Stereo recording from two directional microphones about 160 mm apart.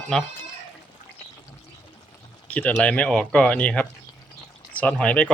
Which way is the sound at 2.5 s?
10° left (ahead or behind).